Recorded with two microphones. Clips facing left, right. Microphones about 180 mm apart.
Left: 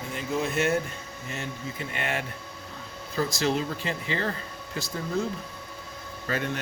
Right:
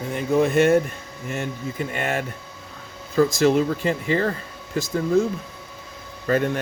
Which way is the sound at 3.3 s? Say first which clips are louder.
Right 8 dB; 50° right (ahead or behind).